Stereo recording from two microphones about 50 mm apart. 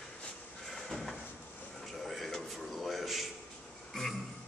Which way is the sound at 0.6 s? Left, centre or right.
Centre.